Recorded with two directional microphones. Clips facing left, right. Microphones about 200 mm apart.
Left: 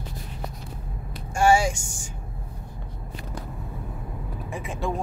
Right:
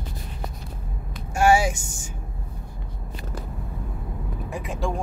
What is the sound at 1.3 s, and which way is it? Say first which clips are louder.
Speech: right 1 dB; 5° right (ahead or behind).